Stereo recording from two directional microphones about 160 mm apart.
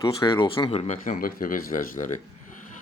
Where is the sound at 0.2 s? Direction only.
30° left (ahead or behind).